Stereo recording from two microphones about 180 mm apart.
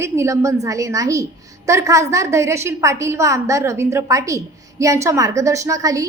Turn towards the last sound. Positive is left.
turn(degrees=-15)  # may be behind; listen again after turning